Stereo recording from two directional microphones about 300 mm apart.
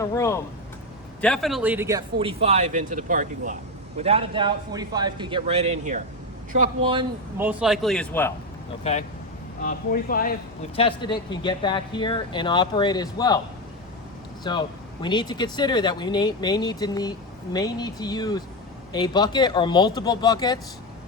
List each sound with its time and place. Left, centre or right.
0.0 s a man's voice: centre
8.8 s speech: left
10.8 s speech: centre
14.5 s speech: centre